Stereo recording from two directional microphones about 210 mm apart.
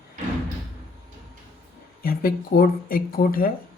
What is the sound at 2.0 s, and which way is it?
Speech, 45° left (ahead or behind).